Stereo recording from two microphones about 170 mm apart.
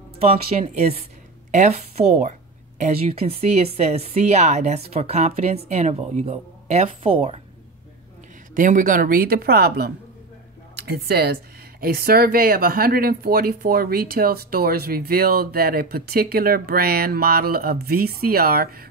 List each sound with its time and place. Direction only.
0.5 s speech: 45° right (ahead or behind)
2.8 s speech: 35° right (ahead or behind)
8.5 s speech: 50° right (ahead or behind)